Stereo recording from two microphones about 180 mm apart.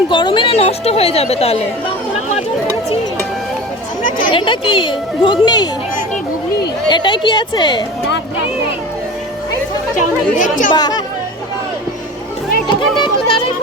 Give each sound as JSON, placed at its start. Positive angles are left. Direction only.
{"t": 0.1, "sound": "a woman's voice", "side_deg": 25}
{"t": 4.3, "sound": "speech", "side_deg": 25}
{"t": 6.9, "sound": "speech", "side_deg": 25}
{"t": 10.0, "sound": "speech", "side_deg": 45}
{"t": 10.8, "sound": "speech", "side_deg": 20}
{"t": 13.0, "sound": "music", "side_deg": 30}